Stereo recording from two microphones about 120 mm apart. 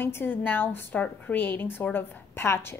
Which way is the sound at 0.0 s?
20° left (ahead or behind).